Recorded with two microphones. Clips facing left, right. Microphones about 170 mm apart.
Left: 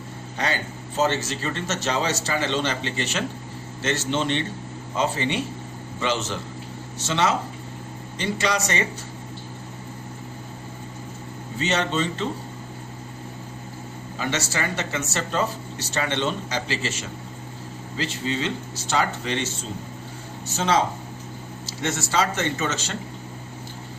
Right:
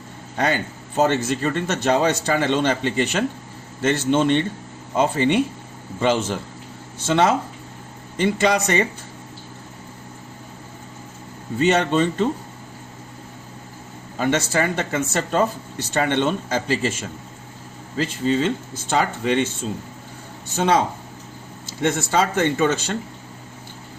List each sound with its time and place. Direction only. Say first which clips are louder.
0.3 s speech: right 5 dB; 55° right (ahead or behind)
11.6 s speech: right 6 dB; 55° right (ahead or behind)
14.2 s speech: right 7 dB; 55° right (ahead or behind)
21.8 s a man's voice: right 4 dB; 55° right (ahead or behind)